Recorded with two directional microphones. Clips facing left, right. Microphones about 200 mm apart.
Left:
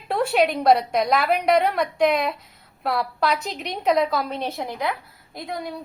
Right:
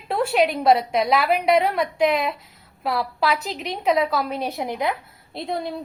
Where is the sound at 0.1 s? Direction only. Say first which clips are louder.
Even; centre (ahead or behind).